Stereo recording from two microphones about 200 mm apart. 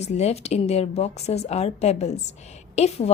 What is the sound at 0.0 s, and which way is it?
A woman's voice, 30° left (ahead or behind).